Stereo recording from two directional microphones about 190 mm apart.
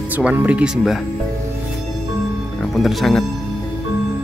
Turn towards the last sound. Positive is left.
turn(degrees=0)  # may be behind; listen again after turning